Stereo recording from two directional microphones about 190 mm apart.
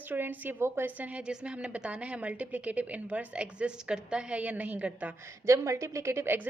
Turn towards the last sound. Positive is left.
turn(degrees=-10)  # may be behind; listen again after turning